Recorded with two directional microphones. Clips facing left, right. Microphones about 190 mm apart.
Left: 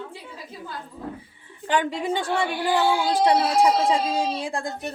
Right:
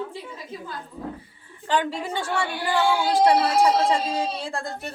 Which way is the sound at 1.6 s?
15° left (ahead or behind).